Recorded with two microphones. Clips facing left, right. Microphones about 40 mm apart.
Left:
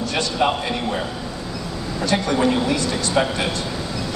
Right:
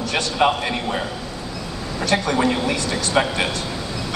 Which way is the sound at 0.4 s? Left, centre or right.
Right.